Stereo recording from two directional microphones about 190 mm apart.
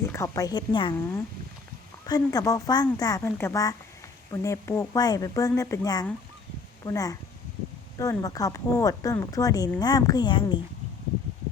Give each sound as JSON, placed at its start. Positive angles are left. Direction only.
{"t": 0.1, "sound": "speech", "side_deg": 15}
{"t": 2.0, "sound": "speech", "side_deg": 20}